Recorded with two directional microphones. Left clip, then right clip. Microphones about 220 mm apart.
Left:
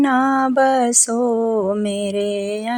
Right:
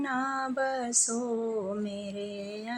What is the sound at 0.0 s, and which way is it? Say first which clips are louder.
Mantra: left 14 dB; 45° left (ahead or behind).